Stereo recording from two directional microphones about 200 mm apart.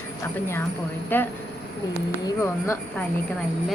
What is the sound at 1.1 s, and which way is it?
Speech, 10° left (ahead or behind).